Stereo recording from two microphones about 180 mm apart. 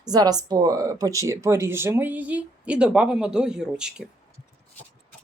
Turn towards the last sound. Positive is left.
turn(degrees=-5)  # may be behind; listen again after turning